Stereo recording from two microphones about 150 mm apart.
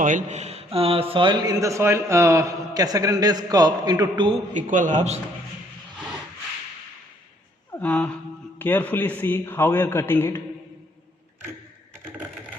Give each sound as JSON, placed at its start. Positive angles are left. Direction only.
{"t": 0.0, "sound": "a man's voice", "side_deg": -60}
{"t": 4.5, "sound": "a man's voice", "side_deg": -60}
{"t": 7.7, "sound": "a man's voice", "side_deg": 10}
{"t": 12.0, "sound": "typing", "side_deg": -10}